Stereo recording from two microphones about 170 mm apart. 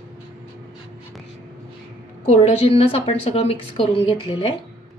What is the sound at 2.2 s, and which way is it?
A woman's voice, 35° left (ahead or behind).